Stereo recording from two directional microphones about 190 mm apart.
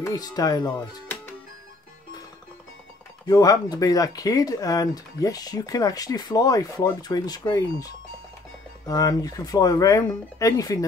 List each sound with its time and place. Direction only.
0.0 s speech: 20° left (ahead or behind)
3.3 s speech: 20° left (ahead or behind)